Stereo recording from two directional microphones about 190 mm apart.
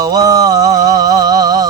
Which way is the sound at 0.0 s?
20° right (ahead or behind).